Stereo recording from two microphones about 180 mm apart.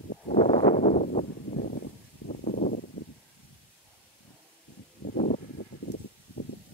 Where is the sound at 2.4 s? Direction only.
45° left (ahead or behind).